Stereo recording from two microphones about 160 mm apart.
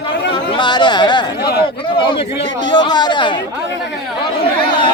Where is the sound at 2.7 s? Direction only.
25° left (ahead or behind).